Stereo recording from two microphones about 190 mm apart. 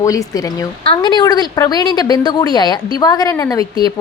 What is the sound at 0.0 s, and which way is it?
A woman's voice, 15° left (ahead or behind).